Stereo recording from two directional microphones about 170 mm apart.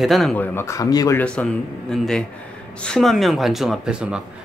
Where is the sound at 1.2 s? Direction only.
5° left (ahead or behind).